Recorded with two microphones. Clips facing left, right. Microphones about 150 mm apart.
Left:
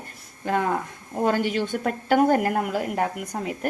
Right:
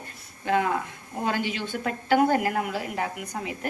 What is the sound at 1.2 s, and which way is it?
A woman's voice, 45° left (ahead or behind).